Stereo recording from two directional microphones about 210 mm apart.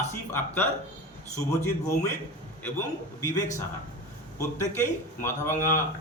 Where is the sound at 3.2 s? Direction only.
15° left (ahead or behind).